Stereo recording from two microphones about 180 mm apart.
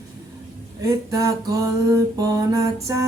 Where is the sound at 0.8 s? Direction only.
15° right (ahead or behind).